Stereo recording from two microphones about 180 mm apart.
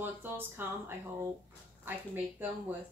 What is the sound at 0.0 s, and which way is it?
A woman's voice, 10° right (ahead or behind).